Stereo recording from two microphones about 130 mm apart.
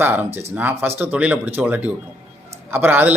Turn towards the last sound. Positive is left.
turn(degrees=-15)  # may be behind; listen again after turning